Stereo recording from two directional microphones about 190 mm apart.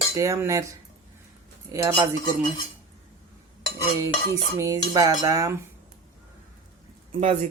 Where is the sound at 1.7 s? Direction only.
15° right (ahead or behind).